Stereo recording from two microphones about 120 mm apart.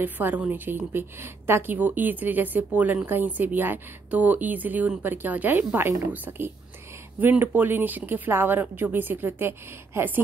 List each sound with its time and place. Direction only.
0.0 s a woman's voice: 15° right (ahead or behind)